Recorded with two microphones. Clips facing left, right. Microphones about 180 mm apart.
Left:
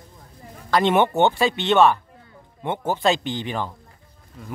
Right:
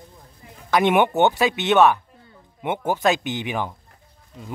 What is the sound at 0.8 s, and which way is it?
Speech, 15° right (ahead or behind).